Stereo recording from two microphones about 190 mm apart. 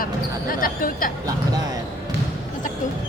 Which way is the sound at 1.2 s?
20° right (ahead or behind).